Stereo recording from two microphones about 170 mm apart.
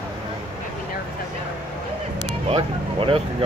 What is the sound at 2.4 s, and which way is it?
Vehicle, 35° right (ahead or behind).